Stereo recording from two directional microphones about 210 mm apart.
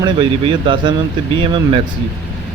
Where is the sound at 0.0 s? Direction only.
25° right (ahead or behind).